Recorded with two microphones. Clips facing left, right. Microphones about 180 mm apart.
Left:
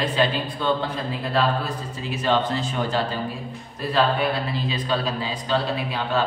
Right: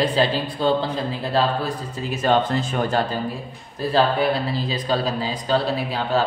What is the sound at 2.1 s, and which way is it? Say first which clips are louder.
Speech: right 3 dB; 45° right (ahead or behind).